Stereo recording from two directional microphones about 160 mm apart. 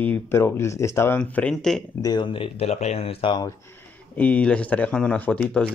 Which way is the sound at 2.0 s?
25° left (ahead or behind).